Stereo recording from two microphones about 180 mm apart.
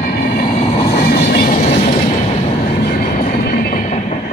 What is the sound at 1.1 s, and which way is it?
Train, 55° left (ahead or behind).